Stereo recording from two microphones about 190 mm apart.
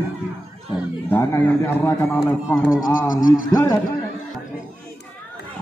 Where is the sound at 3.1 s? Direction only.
45° left (ahead or behind).